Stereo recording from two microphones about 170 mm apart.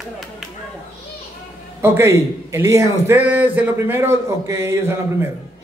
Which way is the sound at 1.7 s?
15° right (ahead or behind).